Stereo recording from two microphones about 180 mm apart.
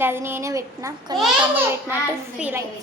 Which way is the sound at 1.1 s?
Centre (ahead or behind).